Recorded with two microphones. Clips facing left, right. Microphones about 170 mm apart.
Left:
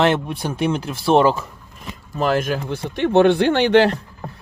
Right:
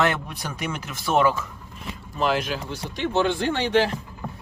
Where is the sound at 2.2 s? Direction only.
45° left (ahead or behind); by 4.0 s 75° left (ahead or behind).